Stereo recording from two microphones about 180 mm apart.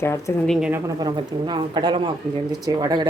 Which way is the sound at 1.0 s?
25° right (ahead or behind).